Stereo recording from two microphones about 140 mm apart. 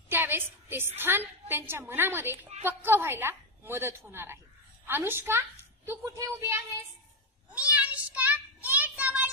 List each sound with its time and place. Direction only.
0.1 s a woman's voice: 15° right (ahead or behind)
7.5 s child singing: 10° right (ahead or behind)